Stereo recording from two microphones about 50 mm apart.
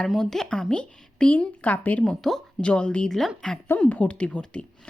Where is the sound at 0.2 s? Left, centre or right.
Centre.